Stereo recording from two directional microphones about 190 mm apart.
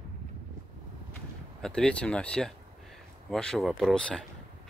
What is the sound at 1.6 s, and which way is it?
Speech, 5° left (ahead or behind).